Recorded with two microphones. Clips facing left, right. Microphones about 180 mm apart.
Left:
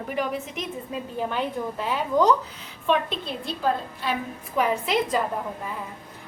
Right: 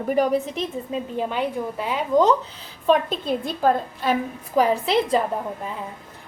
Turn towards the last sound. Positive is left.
turn(degrees=-30)  # may be behind; listen again after turning